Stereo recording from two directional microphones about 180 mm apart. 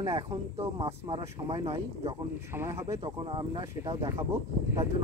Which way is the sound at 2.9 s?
30° right (ahead or behind).